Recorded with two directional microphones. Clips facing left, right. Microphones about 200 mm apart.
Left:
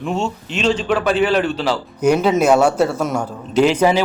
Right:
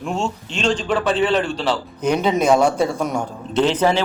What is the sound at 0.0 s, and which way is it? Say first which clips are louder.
A man's voice: left 2 dB; centre (ahead or behind).